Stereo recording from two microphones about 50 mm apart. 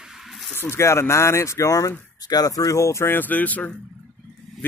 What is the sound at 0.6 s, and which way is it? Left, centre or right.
Speech, left.